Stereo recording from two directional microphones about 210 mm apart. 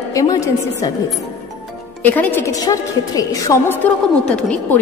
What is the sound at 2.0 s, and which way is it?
A woman's voice, 10° left (ahead or behind).